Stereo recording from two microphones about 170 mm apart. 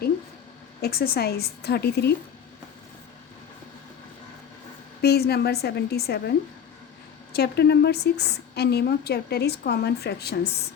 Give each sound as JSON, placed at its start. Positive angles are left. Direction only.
{"t": 0.8, "sound": "a woman's voice", "side_deg": 65}
{"t": 5.0, "sound": "a woman's voice", "side_deg": 70}
{"t": 7.3, "sound": "a woman's voice", "side_deg": 70}